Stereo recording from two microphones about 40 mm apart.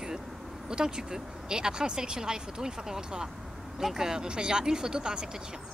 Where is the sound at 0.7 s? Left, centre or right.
Centre.